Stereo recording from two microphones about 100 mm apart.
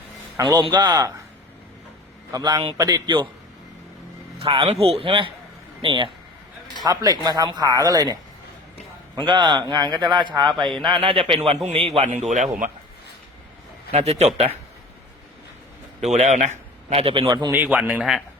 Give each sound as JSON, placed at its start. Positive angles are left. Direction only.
{"t": 0.3, "sound": "a man's voice", "side_deg": -35}
{"t": 0.7, "sound": "a man's voice", "side_deg": -45}
{"t": 2.3, "sound": "a man's voice", "side_deg": -45}
{"t": 4.4, "sound": "a man's voice", "side_deg": -75}
{"t": 6.8, "sound": "speech", "side_deg": -35}
{"t": 9.1, "sound": "a man's voice", "side_deg": -50}
{"t": 10.7, "sound": "speech", "side_deg": 5}
{"t": 10.9, "sound": "a man's voice", "side_deg": -65}
{"t": 13.9, "sound": "speech", "side_deg": -90}
{"t": 16.0, "sound": "a man's voice", "side_deg": -90}
{"t": 16.9, "sound": "a man's voice", "side_deg": -70}
{"t": 17.2, "sound": "speech", "side_deg": -40}
{"t": 17.5, "sound": "speech", "side_deg": -20}